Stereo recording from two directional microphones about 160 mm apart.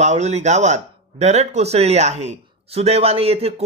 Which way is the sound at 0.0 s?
45° right (ahead or behind).